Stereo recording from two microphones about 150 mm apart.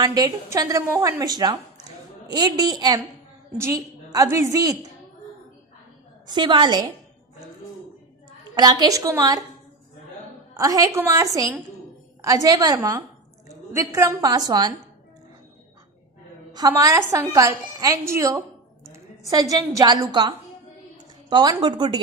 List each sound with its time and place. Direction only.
0.0 s a woman's voice: 25° right (ahead or behind)
6.2 s a woman's voice: 30° right (ahead or behind)
8.5 s a woman's voice: 30° right (ahead or behind)
10.5 s a woman's voice: 20° right (ahead or behind)
16.5 s a woman's voice: 25° right (ahead or behind)